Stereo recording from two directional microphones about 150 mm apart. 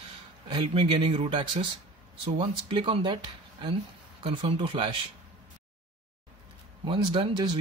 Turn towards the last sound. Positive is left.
turn(degrees=-30)  # may be behind; listen again after turning